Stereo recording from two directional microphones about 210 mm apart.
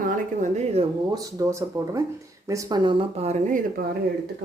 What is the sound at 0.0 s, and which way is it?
Speech, 40° right (ahead or behind).